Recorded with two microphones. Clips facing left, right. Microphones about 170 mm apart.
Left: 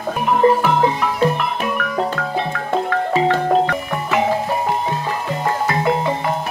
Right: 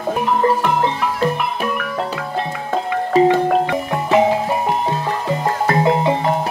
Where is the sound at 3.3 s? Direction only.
20° right (ahead or behind).